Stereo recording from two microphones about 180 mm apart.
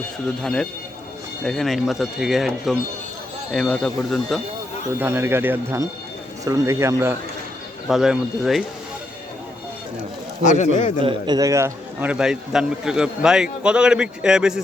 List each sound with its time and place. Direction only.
0.4 s a man's voice: 5° left (ahead or behind)
4.9 s speech: 15° right (ahead or behind)
7.9 s a man's voice: 5° right (ahead or behind)
10.4 s a man's voice: 40° left (ahead or behind)
11.0 s a man's voice: 20° right (ahead or behind); by 14.6 s 5° right (ahead or behind)